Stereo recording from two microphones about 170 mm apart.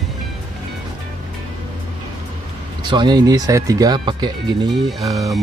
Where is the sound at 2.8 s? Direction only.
25° right (ahead or behind).